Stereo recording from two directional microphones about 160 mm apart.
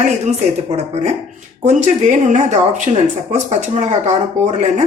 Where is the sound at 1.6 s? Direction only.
50° right (ahead or behind).